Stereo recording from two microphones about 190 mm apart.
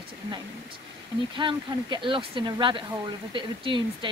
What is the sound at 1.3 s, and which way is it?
Speech, 25° right (ahead or behind).